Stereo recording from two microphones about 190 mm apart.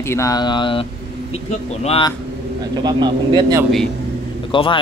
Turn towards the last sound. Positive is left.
turn(degrees=25)  # may be behind; listen again after turning